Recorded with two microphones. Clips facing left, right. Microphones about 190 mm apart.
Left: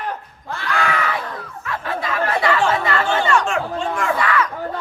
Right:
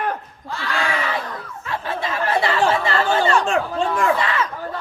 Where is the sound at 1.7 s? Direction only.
25° right (ahead or behind).